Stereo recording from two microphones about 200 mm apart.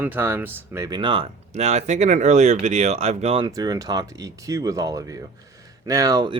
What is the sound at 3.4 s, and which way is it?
Speech, 20° right (ahead or behind).